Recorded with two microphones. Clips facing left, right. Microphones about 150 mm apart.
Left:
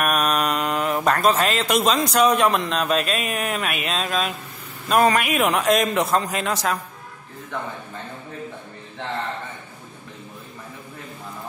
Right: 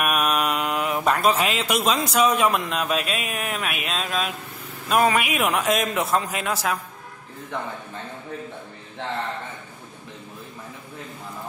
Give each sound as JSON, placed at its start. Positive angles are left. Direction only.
{"t": 0.0, "sound": "a man's voice", "side_deg": -5}